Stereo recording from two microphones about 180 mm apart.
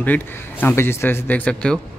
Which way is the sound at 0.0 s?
10° left (ahead or behind).